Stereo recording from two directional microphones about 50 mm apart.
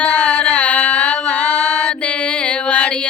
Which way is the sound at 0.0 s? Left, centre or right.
Left.